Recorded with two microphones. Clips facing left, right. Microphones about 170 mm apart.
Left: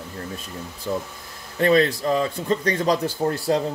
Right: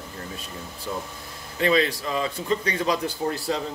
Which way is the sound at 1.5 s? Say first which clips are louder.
Left 4 dB; 45° left (ahead or behind).